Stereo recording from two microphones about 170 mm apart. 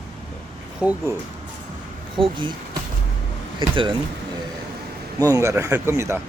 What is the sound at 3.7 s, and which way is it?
Speech, 30° right (ahead or behind).